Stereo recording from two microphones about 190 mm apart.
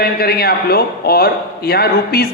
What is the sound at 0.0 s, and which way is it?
A man's voice, 55° left (ahead or behind).